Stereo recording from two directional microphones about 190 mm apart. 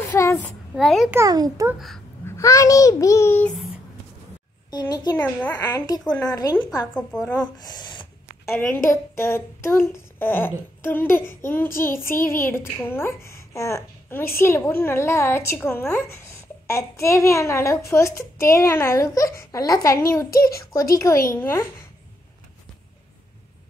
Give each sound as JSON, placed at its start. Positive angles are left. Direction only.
{"t": 0.0, "sound": "a sound", "side_deg": 10}
{"t": 0.7, "sound": "a woman's voice", "side_deg": 0}
{"t": 1.1, "sound": "a child's voice", "side_deg": -20}
{"t": 2.2, "sound": "speech", "side_deg": 15}
{"t": 4.6, "sound": "a child's voice", "side_deg": 20}
{"t": 5.2, "sound": "speech", "side_deg": 10}
{"t": 6.9, "sound": "a woman's voice", "side_deg": 5}
{"t": 7.3, "sound": "speech", "side_deg": 20}
{"t": 8.5, "sound": "speech", "side_deg": 5}
{"t": 20.2, "sound": "a child's voice", "side_deg": 50}
{"t": 20.9, "sound": "speech", "side_deg": 15}